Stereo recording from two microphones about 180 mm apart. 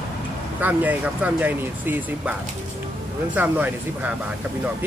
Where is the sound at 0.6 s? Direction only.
10° right (ahead or behind).